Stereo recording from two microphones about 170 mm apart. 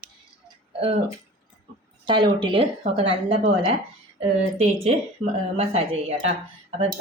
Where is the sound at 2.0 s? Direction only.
30° right (ahead or behind).